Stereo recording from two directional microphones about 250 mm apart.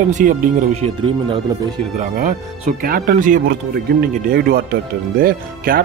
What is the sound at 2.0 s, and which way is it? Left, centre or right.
Speech, right.